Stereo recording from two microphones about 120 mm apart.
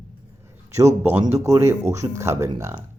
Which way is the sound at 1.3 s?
25° right (ahead or behind).